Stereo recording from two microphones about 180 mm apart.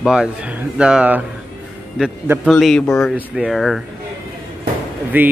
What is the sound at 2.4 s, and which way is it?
Speech, centre (ahead or behind).